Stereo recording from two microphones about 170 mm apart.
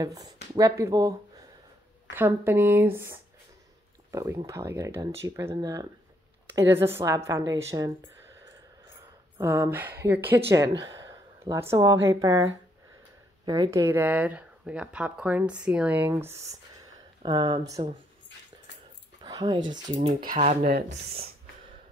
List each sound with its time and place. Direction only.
0.0 s speech: 20° right (ahead or behind)
2.1 s speech: 15° right (ahead or behind)
9.4 s a woman's voice: 15° right (ahead or behind)
13.5 s speech: 20° right (ahead or behind)
19.2 s speech: 25° right (ahead or behind)
19.7 s speech: 40° right (ahead or behind)